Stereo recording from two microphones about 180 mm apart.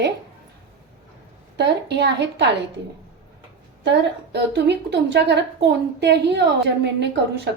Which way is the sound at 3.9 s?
75° right (ahead or behind).